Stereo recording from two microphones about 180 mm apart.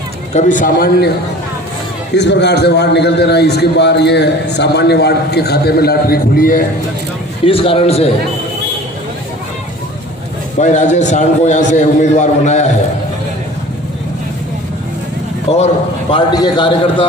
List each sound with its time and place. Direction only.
0.3 s a man's voice: 45° left (ahead or behind)
2.1 s a man's voice: 70° left (ahead or behind); by 6.7 s 50° left (ahead or behind)
7.4 s a man's voice: 30° left (ahead or behind)
10.6 s a man's voice: 40° left (ahead or behind)
15.4 s a man's voice: 35° left (ahead or behind)
16.1 s a man's voice: 25° left (ahead or behind)